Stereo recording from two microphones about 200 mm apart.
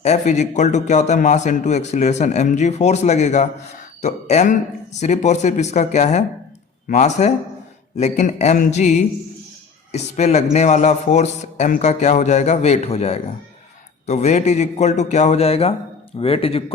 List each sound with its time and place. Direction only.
0.0 s a man's voice: 35° left (ahead or behind)